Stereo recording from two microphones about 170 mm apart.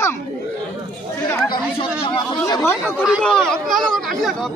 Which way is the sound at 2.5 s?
15° left (ahead or behind).